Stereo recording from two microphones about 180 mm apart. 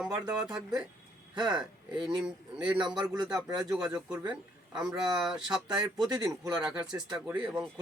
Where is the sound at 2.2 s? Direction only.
5° right (ahead or behind).